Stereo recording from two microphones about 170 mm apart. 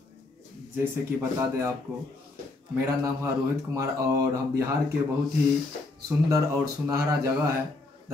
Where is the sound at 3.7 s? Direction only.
20° right (ahead or behind).